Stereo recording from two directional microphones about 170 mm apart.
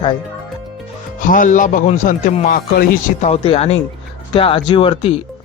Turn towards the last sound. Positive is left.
turn(degrees=35)  # may be behind; listen again after turning